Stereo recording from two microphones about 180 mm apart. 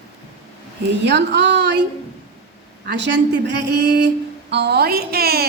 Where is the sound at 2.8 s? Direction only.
70° right (ahead or behind).